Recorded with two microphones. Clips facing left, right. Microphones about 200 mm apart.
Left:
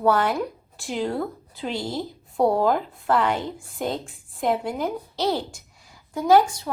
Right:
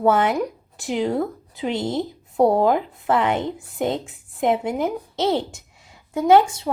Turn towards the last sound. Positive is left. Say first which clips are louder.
# right 2 dB
turn(degrees=-25)  # may be behind; listen again after turning